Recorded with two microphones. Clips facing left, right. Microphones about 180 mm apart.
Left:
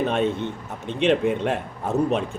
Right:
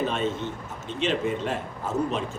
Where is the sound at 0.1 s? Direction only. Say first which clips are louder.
Left 5 dB; 60° left (ahead or behind).